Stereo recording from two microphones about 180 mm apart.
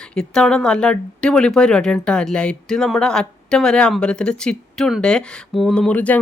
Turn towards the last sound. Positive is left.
turn(degrees=10)  # may be behind; listen again after turning